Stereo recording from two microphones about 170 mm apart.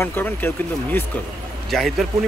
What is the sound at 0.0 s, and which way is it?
Speech, 10° left (ahead or behind).